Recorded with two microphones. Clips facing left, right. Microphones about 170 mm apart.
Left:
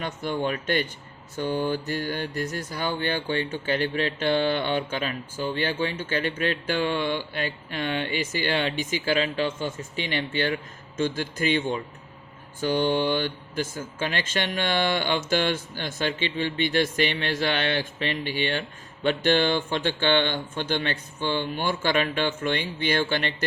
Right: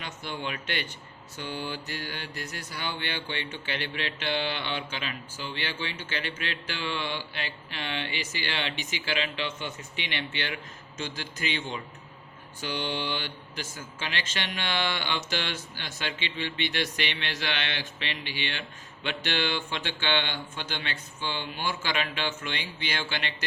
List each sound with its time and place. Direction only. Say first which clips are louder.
0.0 s speech: left 8 dB; 45° left (ahead or behind)